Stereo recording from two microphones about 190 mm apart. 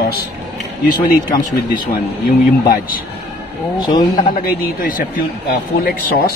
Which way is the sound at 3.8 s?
20° left (ahead or behind).